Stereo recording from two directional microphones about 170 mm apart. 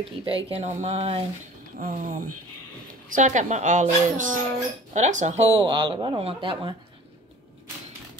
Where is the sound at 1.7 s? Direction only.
55° right (ahead or behind); by 6.7 s 30° right (ahead or behind).